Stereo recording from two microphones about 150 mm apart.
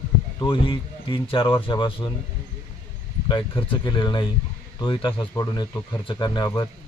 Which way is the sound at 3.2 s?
35° left (ahead or behind).